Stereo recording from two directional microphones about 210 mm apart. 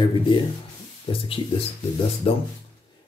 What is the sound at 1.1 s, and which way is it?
Speech, 25° left (ahead or behind).